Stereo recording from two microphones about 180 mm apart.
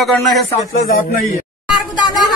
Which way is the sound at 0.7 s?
50° left (ahead or behind).